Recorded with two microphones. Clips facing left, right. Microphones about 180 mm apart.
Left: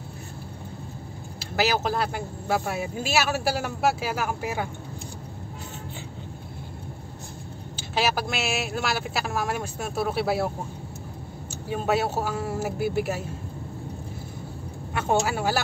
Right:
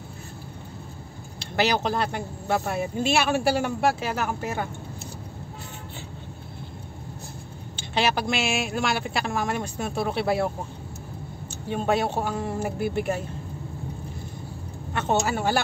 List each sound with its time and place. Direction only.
1.4 s speech: 5° left (ahead or behind)
7.7 s speech: 5° left (ahead or behind)
11.7 s speech: 5° left (ahead or behind)
15.0 s speech: 10° left (ahead or behind)